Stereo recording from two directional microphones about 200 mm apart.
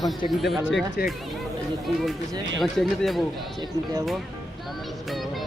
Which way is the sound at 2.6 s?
Centre (ahead or behind).